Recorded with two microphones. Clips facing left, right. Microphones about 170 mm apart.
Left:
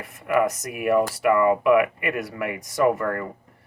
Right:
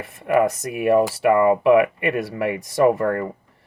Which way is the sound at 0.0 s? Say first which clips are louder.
Right 3 dB; 25° right (ahead or behind).